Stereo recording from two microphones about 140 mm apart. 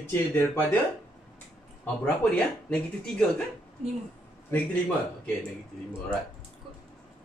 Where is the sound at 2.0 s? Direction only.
5° left (ahead or behind).